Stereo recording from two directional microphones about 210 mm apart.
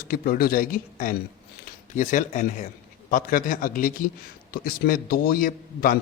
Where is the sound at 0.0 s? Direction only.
45° left (ahead or behind).